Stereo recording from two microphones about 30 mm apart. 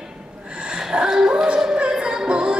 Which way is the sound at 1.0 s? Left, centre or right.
Centre.